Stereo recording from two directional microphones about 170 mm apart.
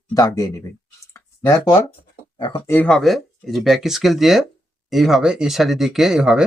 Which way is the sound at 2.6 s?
10° left (ahead or behind).